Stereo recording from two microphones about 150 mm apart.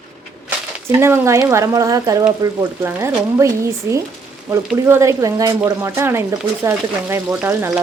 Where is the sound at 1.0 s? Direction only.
15° right (ahead or behind).